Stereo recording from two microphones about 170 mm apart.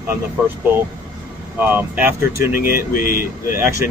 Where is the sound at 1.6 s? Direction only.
10° right (ahead or behind).